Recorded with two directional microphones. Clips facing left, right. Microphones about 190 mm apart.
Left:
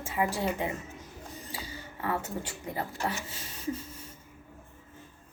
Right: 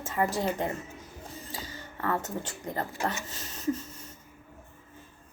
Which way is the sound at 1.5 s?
10° left (ahead or behind).